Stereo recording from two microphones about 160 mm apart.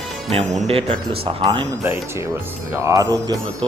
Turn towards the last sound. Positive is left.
turn(degrees=-20)  # may be behind; listen again after turning